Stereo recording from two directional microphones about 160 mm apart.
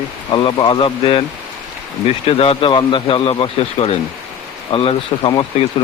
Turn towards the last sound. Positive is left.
turn(degrees=30)  # may be behind; listen again after turning